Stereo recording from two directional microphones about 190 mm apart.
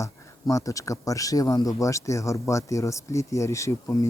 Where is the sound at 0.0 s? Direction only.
15° left (ahead or behind).